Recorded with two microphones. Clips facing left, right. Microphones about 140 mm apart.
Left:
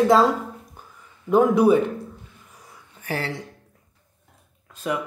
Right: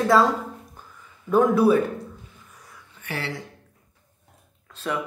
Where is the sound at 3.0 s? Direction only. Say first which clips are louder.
Left 3 dB; 40° left (ahead or behind).